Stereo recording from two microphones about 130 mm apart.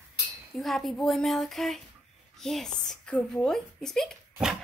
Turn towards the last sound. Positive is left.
turn(degrees=0)  # may be behind; listen again after turning